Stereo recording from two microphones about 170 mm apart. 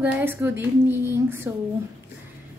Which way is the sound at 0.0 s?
10° right (ahead or behind).